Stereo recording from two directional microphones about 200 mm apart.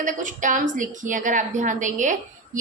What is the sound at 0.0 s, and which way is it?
A woman's voice, 40° right (ahead or behind).